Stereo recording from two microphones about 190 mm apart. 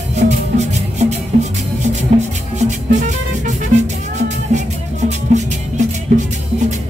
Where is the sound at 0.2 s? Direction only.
45° right (ahead or behind).